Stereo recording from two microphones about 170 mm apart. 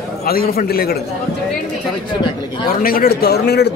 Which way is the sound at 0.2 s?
60° left (ahead or behind).